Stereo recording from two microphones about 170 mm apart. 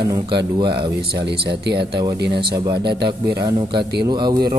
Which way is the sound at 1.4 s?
75° right (ahead or behind).